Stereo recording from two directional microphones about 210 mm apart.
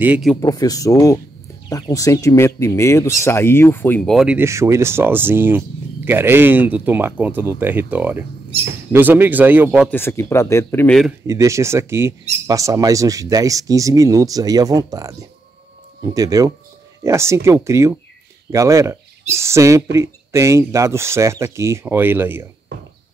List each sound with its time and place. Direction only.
0.0 s speech: 5° right (ahead or behind)
0.4 s speech: 20° left (ahead or behind); by 9.8 s 10° right (ahead or behind)
9.8 s speech: 10° left (ahead or behind)
11.2 s speech: 15° right (ahead or behind)